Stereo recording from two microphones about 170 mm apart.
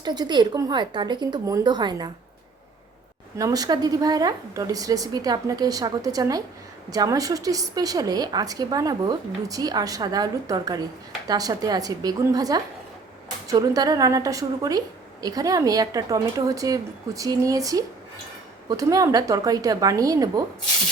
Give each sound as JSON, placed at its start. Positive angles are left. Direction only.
{"t": 0.0, "sound": "a woman's voice", "side_deg": -25}
{"t": 3.3, "sound": "a woman's voice", "side_deg": -20}